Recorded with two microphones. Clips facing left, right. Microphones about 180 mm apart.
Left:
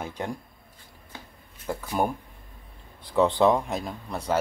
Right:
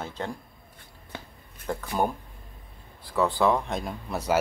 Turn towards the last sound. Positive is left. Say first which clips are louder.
# right 1 dB
turn(degrees=-5)  # may be behind; listen again after turning